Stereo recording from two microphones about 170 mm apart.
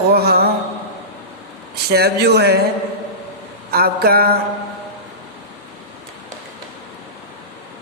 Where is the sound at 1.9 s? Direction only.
70° right (ahead or behind).